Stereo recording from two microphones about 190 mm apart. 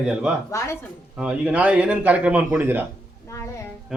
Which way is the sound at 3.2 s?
15° left (ahead or behind).